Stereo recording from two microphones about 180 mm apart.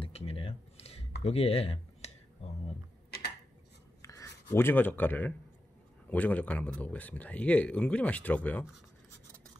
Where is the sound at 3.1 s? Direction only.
65° left (ahead or behind).